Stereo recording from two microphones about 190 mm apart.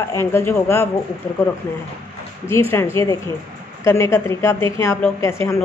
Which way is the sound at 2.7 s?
15° left (ahead or behind).